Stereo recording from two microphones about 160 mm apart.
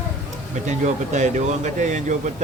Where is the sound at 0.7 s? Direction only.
50° right (ahead or behind).